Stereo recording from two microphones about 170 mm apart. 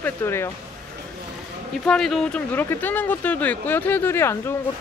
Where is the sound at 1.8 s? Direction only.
5° left (ahead or behind).